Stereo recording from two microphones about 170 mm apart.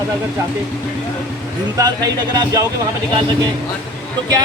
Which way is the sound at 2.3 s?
25° right (ahead or behind).